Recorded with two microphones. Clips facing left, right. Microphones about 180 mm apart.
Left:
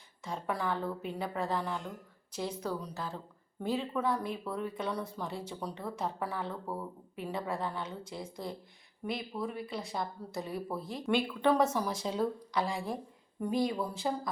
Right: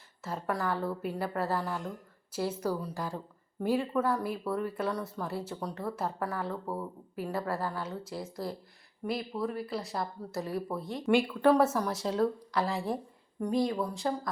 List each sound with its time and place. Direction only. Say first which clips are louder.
0.2 s speech: right 2 dB; 5° right (ahead or behind)